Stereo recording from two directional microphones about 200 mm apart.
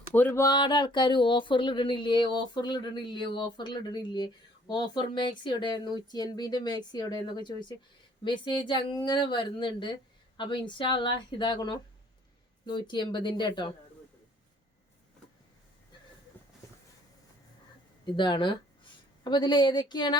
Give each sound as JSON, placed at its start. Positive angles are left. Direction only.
{"t": 0.1, "sound": "speech", "side_deg": 10}
{"t": 16.4, "sound": "a sound", "side_deg": 10}
{"t": 18.0, "sound": "speech", "side_deg": 25}